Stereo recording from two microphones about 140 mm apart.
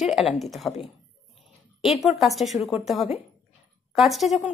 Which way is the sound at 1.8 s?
Centre (ahead or behind).